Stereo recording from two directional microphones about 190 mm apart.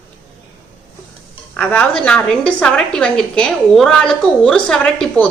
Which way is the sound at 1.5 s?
5° left (ahead or behind).